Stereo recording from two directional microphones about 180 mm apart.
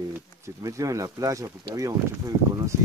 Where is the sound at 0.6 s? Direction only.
20° right (ahead or behind).